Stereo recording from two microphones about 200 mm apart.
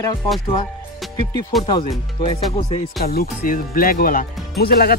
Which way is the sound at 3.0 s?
50° left (ahead or behind).